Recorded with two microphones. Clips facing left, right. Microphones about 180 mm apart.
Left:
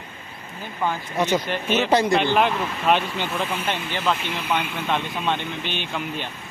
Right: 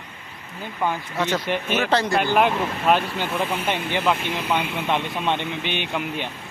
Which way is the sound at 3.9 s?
15° right (ahead or behind).